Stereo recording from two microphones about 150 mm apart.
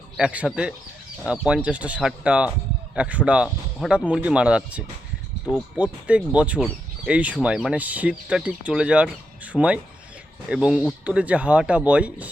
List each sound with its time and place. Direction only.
0.2 s speech: 5° right (ahead or behind)